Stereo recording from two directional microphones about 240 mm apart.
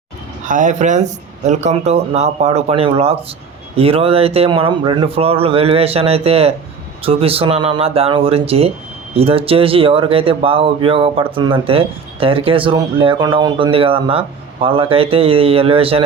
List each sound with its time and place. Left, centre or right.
0.4 s speech: right